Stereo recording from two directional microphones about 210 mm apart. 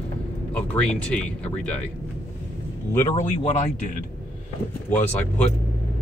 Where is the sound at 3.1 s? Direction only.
35° left (ahead or behind).